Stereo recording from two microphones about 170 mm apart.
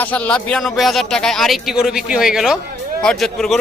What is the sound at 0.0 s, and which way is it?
Speech, 10° left (ahead or behind).